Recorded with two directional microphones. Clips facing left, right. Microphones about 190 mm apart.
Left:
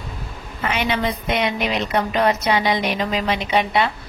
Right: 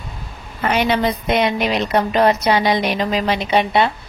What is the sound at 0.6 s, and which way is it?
A woman's voice, 40° right (ahead or behind).